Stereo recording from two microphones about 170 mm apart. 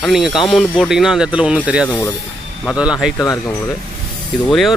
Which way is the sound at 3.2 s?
20° left (ahead or behind).